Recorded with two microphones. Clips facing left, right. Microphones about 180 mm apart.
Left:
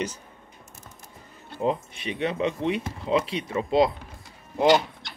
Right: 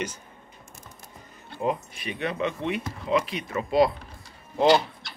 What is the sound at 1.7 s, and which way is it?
Speech, 30° left (ahead or behind).